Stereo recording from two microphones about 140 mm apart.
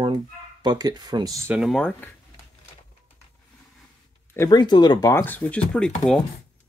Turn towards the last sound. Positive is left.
turn(degrees=5)  # may be behind; listen again after turning